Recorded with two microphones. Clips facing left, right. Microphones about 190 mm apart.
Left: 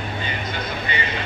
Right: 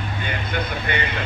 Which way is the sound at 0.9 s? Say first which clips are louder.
Right 3 dB; 55° right (ahead or behind).